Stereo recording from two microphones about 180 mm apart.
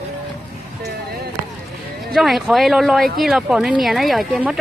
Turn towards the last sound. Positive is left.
turn(degrees=-5)  # may be behind; listen again after turning